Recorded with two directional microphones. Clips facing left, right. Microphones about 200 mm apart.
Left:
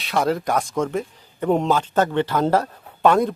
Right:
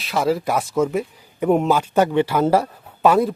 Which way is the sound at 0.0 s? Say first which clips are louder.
Right 1 dB; centre (ahead or behind).